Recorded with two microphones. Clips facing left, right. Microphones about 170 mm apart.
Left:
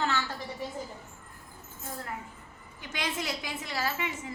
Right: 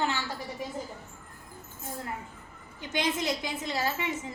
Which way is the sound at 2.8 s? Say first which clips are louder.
Right 5 dB; 20° right (ahead or behind).